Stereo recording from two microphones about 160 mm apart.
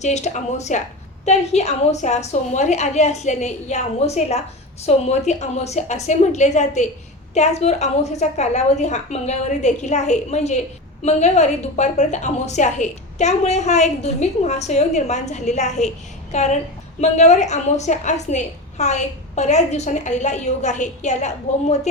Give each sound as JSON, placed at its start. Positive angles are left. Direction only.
{"t": 0.0, "sound": "a woman's voice", "side_deg": 45}